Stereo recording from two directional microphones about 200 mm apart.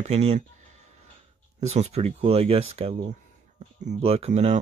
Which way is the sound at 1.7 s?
30° right (ahead or behind).